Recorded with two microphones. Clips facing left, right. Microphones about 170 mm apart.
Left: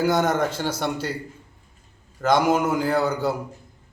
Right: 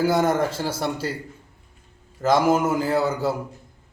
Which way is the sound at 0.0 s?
30° right (ahead or behind).